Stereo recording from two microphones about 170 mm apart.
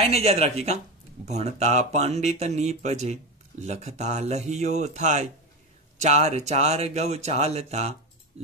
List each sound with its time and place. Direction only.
0.0 s speech: 40° right (ahead or behind)